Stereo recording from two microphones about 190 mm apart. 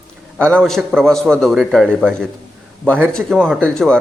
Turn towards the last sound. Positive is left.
turn(degrees=5)  # may be behind; listen again after turning